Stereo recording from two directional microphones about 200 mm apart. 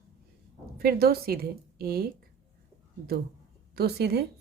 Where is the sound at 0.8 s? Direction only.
50° right (ahead or behind).